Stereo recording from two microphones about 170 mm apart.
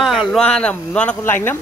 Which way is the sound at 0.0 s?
Centre (ahead or behind).